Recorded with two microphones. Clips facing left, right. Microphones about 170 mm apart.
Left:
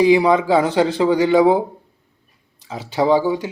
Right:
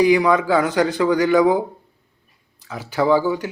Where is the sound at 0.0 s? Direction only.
25° left (ahead or behind).